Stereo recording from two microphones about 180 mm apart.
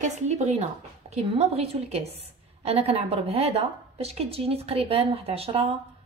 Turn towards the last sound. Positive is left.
turn(degrees=-35)  # may be behind; listen again after turning